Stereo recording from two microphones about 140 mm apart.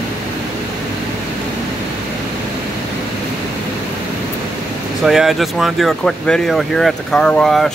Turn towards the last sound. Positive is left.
turn(degrees=5)  # may be behind; listen again after turning